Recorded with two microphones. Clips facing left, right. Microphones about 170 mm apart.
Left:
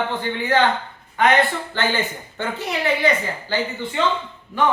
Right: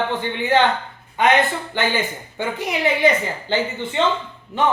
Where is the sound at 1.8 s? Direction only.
15° right (ahead or behind).